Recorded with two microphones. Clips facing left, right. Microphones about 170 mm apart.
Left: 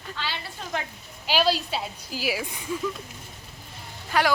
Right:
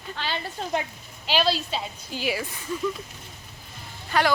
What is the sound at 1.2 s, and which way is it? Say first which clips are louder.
Speech: left 1 dB; 10° left (ahead or behind).